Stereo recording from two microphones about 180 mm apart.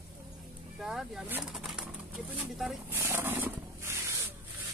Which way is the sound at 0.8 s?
Centre (ahead or behind).